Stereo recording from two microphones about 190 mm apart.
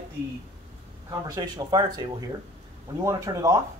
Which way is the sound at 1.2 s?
20° right (ahead or behind).